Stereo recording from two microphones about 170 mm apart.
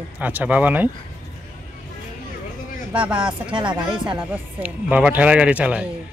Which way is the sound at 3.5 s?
25° right (ahead or behind).